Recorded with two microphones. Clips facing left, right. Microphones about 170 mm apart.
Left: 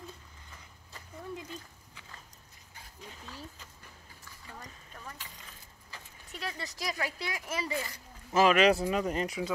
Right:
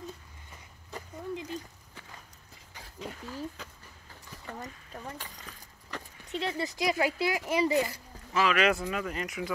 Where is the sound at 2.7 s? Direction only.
90° right.